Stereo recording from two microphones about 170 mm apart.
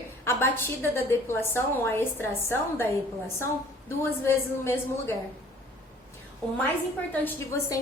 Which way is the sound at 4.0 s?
15° left (ahead or behind).